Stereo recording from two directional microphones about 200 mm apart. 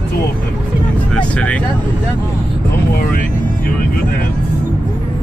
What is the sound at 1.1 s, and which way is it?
Speech, 5° left (ahead or behind).